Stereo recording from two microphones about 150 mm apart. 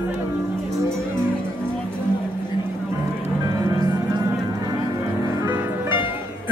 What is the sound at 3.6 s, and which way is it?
Music, 25° right (ahead or behind).